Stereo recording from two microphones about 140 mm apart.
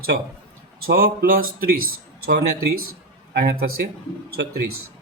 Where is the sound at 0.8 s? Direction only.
90° right.